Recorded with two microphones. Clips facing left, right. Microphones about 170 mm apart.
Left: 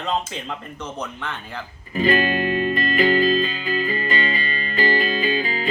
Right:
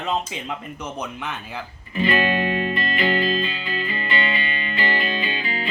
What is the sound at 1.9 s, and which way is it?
Music, 40° left (ahead or behind).